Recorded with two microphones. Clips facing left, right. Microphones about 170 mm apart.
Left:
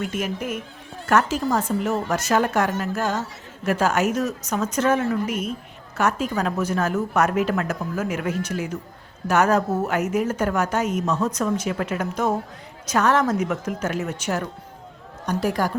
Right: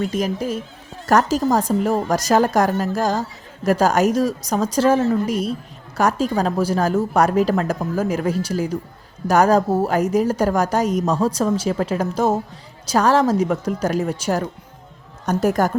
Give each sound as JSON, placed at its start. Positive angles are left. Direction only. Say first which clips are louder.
{"t": 0.0, "sound": "a woman's voice", "louder": "right 5 dB", "side_deg": -35}
{"t": 15.3, "sound": "a woman's voice", "louder": "right 5 dB", "side_deg": -45}